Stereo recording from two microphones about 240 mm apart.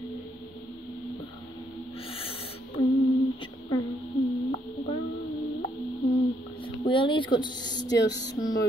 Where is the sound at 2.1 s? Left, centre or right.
Left.